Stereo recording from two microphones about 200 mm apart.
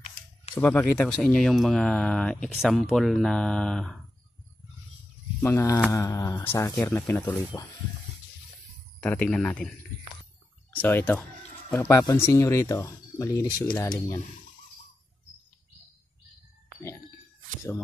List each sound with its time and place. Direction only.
0.0 s a sound: 35° left (ahead or behind)
0.6 s speech: 10° left (ahead or behind)
5.4 s speech: 15° left (ahead or behind)
9.0 s speech: 5° left (ahead or behind)
10.8 s speech: 10° left (ahead or behind)